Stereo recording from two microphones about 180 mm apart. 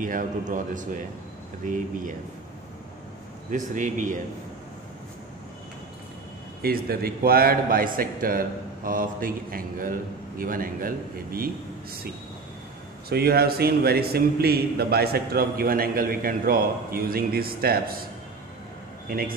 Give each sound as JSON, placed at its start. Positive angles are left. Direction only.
{"t": 0.0, "sound": "a man's voice", "side_deg": -50}
{"t": 3.4, "sound": "a man's voice", "side_deg": -45}
{"t": 6.6, "sound": "a man's voice", "side_deg": -60}
{"t": 13.1, "sound": "a man's voice", "side_deg": -60}
{"t": 19.0, "sound": "a man's voice", "side_deg": -55}